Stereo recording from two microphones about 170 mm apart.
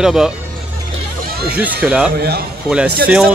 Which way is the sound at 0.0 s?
5° right (ahead or behind).